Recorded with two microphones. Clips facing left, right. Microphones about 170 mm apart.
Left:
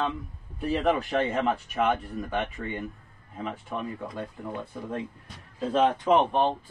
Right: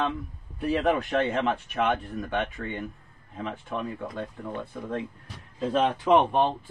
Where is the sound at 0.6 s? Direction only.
Centre (ahead or behind).